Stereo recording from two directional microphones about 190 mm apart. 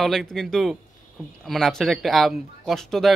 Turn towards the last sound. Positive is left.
turn(degrees=0)  # may be behind; listen again after turning